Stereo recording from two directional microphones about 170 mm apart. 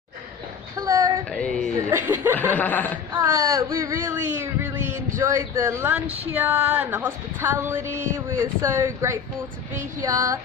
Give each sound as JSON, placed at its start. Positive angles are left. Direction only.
{"t": 0.7, "sound": "a sound", "side_deg": -20}
{"t": 1.3, "sound": "speech", "side_deg": 5}
{"t": 1.9, "sound": "speech", "side_deg": -10}
{"t": 2.5, "sound": "speech", "side_deg": 10}
{"t": 3.1, "sound": "speech", "side_deg": -20}
{"t": 10.0, "sound": "female singing", "side_deg": -20}